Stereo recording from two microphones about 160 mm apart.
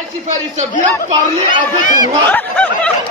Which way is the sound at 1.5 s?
55° left (ahead or behind).